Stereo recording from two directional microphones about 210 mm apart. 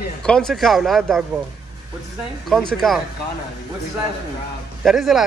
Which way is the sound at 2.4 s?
Centre (ahead or behind).